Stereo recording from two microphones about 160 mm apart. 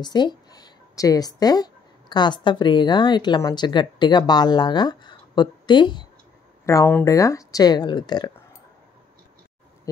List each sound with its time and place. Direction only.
0.0 s a woman's voice: 25° left (ahead or behind)